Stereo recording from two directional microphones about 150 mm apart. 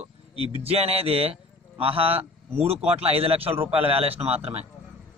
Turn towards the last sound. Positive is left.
turn(degrees=-45)  # may be behind; listen again after turning